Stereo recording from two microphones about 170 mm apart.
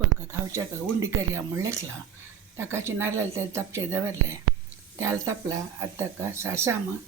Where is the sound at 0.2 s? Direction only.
20° right (ahead or behind).